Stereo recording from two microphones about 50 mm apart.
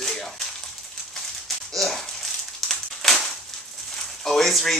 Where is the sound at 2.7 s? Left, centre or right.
Centre.